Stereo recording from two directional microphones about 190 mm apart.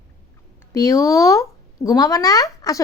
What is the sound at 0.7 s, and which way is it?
Speech, 15° left (ahead or behind).